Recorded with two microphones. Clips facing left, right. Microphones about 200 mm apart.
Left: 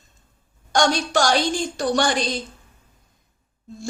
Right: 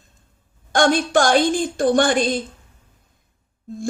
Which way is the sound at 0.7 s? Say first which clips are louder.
Right 3 dB; 55° right (ahead or behind).